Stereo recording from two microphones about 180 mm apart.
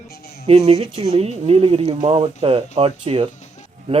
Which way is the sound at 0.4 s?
35° right (ahead or behind).